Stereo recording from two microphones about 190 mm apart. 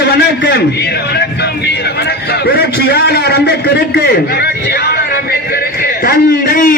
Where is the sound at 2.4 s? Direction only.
60° left (ahead or behind).